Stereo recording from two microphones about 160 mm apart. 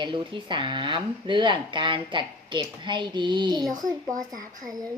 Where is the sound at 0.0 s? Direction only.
30° right (ahead or behind).